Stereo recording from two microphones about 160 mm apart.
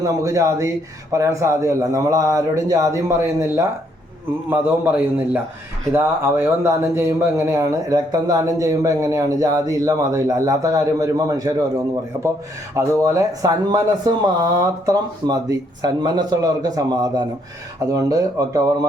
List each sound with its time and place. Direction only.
0.0 s a man's voice: 20° right (ahead or behind)
12.7 s speech: 20° right (ahead or behind)